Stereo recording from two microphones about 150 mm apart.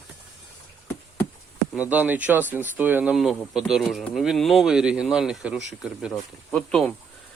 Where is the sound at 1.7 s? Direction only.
10° right (ahead or behind).